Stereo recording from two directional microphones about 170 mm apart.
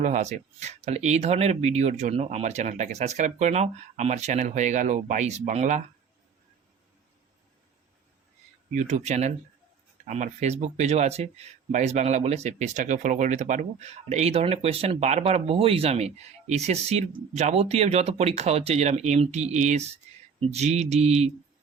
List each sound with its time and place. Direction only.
0.0 s speech: 45° right (ahead or behind)
8.7 s speech: 45° right (ahead or behind)